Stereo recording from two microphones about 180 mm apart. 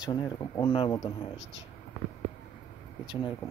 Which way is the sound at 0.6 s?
30° left (ahead or behind).